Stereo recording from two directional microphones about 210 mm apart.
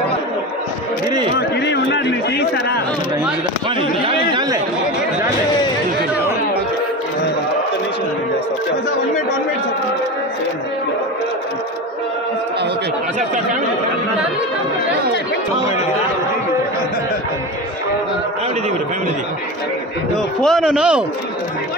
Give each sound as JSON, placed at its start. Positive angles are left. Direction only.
{"t": 1.6, "sound": "speech", "side_deg": 55}
{"t": 4.1, "sound": "speech", "side_deg": -20}
{"t": 20.4, "sound": "a man's voice", "side_deg": 0}